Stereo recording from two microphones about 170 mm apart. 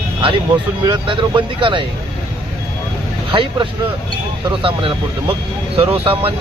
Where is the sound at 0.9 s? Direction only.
30° right (ahead or behind).